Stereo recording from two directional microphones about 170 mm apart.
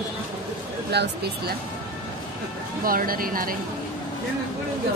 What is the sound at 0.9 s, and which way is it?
Speech, 75° right (ahead or behind).